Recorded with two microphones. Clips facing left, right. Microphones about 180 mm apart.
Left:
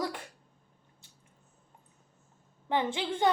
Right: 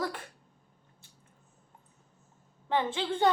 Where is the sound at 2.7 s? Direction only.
15° left (ahead or behind).